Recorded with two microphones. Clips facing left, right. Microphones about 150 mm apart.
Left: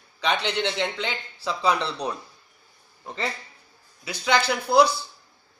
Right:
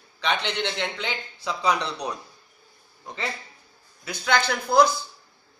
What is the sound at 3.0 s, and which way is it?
Speech, centre (ahead or behind).